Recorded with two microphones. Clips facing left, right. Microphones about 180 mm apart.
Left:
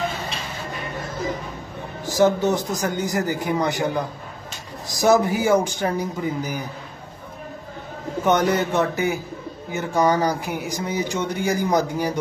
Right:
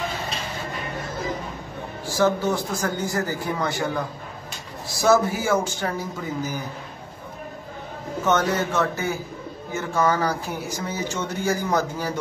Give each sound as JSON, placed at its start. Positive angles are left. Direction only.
{"t": 2.1, "sound": "speech", "side_deg": 15}
{"t": 8.2, "sound": "speech", "side_deg": 15}